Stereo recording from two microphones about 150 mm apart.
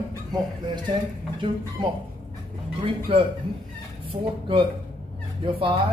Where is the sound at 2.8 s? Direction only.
40° right (ahead or behind).